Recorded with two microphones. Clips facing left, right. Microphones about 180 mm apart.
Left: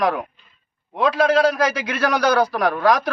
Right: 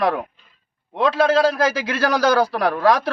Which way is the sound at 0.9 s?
30° right (ahead or behind).